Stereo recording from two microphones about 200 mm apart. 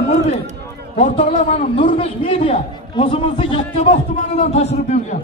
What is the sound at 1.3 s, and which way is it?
A man's voice, 40° left (ahead or behind).